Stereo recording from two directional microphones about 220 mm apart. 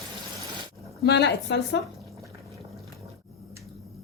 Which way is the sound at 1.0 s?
50° left (ahead or behind).